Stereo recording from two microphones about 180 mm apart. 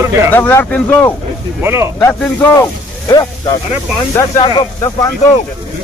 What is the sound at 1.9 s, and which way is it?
Speech, 10° left (ahead or behind).